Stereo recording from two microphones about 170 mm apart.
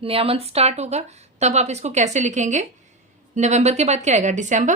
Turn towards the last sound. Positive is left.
turn(degrees=-45)  # may be behind; listen again after turning